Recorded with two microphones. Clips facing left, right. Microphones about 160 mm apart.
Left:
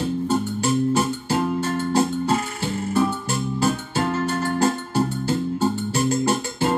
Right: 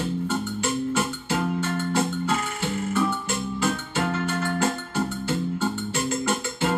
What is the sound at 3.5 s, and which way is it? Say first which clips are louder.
Keyboard: left 4 dB; 35° left (ahead or behind).